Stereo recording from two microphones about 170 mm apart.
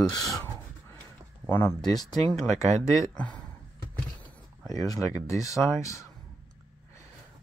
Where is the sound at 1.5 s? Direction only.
15° left (ahead or behind).